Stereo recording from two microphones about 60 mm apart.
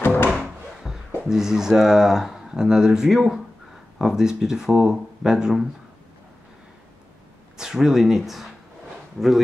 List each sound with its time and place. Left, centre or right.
0.0 s drawer open or close: left
0.8 s a sound: centre
1.2 s speech: centre
7.5 s speech: centre